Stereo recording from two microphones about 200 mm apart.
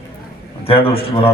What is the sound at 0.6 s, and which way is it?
Speech, 30° left (ahead or behind).